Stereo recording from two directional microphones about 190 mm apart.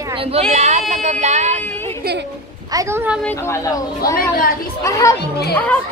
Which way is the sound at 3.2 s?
15° left (ahead or behind).